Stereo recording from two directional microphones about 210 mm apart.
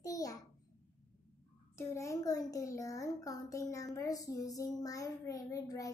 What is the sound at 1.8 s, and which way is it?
A child's voice, 15° left (ahead or behind).